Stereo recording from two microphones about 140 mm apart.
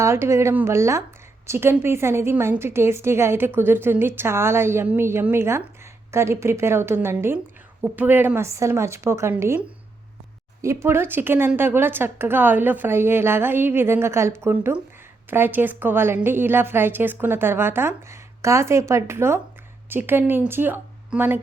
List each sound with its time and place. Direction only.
0.0 s a woman's voice: 20° right (ahead or behind)